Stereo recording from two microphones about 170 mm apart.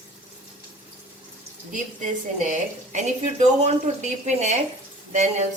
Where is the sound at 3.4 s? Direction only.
45° right (ahead or behind).